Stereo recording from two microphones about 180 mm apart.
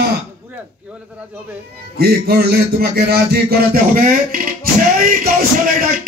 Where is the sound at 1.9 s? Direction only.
60° right (ahead or behind).